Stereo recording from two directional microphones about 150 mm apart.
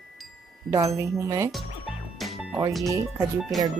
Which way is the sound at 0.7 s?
20° right (ahead or behind).